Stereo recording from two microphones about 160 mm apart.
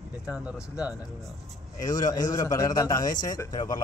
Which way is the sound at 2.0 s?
25° left (ahead or behind).